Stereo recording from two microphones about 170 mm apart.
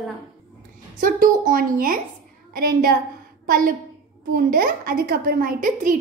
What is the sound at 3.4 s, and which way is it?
A woman's voice, 55° right (ahead or behind).